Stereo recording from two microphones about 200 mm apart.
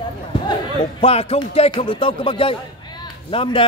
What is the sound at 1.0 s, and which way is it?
Speech, 30° left (ahead or behind).